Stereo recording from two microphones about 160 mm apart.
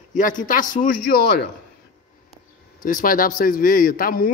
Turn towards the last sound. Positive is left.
turn(degrees=65)  # may be behind; listen again after turning